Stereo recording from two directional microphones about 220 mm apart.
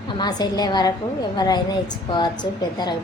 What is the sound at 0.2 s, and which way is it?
A woman's voice, 20° left (ahead or behind).